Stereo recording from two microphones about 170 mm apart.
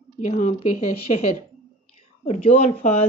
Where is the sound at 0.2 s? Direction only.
45° left (ahead or behind).